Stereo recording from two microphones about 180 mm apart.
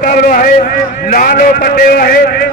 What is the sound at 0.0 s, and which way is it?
A man's voice, 50° left (ahead or behind).